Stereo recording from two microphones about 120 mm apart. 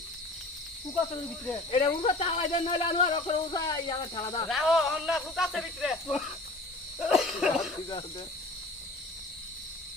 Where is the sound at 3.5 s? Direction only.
30° left (ahead or behind).